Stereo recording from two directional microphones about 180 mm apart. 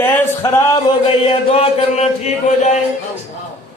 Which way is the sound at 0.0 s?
15° left (ahead or behind).